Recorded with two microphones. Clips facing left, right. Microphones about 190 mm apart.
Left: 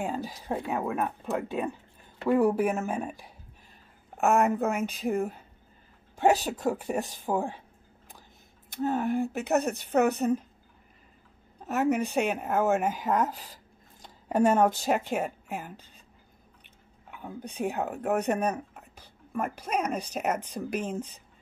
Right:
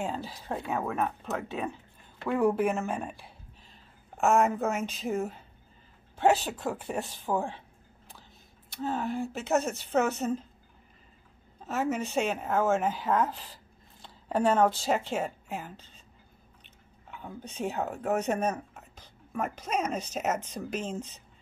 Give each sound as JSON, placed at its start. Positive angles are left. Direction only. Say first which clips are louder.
{"t": 0.0, "sound": "speech", "louder": "left 2 dB", "side_deg": 15}
{"t": 8.8, "sound": "speech", "louder": "left 4 dB", "side_deg": 15}
{"t": 11.6, "sound": "speech", "louder": "left 4 dB", "side_deg": 15}
{"t": 17.1, "sound": "speech", "louder": "left 2 dB", "side_deg": 10}